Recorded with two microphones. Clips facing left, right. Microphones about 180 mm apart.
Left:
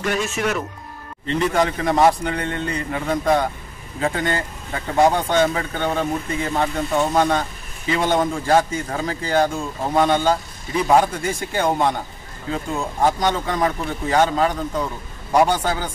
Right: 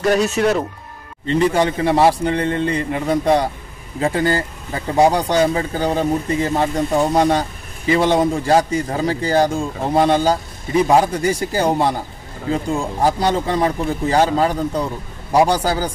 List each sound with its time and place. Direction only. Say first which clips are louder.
0.0 s speech: right 7 dB; 40° right (ahead or behind)